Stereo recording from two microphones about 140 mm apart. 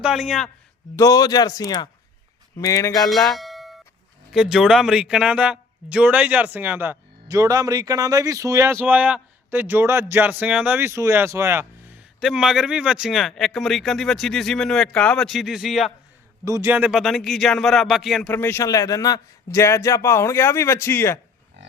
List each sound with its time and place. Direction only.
0.0 s speech: 5° right (ahead or behind)
0.9 s a man's voice: 25° left (ahead or behind)
3.1 s bell: centre (ahead or behind)
4.3 s a man's voice: 5° right (ahead or behind)
7.3 s speech: 25° right (ahead or behind)
12.2 s speech: 5° right (ahead or behind)
16.4 s speech: 20° right (ahead or behind); by 18.3 s centre (ahead or behind)
18.3 s a man's voice: 15° left (ahead or behind)